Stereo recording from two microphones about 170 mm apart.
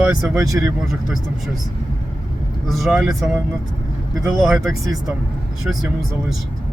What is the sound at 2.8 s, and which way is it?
Speech, centre (ahead or behind).